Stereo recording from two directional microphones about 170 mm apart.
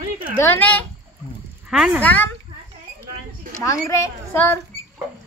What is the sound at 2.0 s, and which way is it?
Speech, 10° left (ahead or behind).